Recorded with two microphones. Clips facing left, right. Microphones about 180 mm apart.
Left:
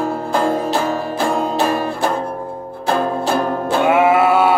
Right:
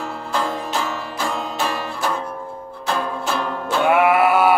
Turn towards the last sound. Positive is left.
turn(degrees=25)  # may be behind; listen again after turning